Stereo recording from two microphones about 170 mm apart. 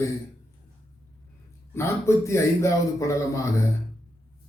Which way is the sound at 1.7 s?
15° left (ahead or behind).